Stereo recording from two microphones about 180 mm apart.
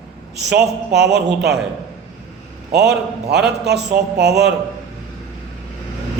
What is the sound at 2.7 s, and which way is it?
A man's voice, 65° right (ahead or behind).